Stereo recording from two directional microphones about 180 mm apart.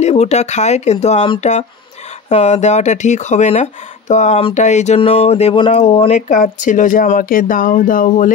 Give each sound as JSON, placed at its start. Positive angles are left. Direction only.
{"t": 0.0, "sound": "speech", "side_deg": 35}